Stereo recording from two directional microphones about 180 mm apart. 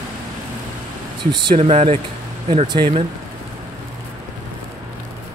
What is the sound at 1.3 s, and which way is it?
Speech, 25° right (ahead or behind).